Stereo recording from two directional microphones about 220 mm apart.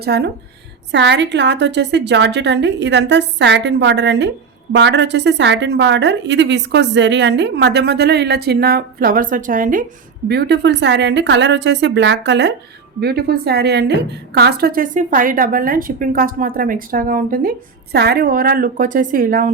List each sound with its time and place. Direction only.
0.0 s a woman's voice: 50° right (ahead or behind)
10.2 s a woman's voice: 50° right (ahead or behind)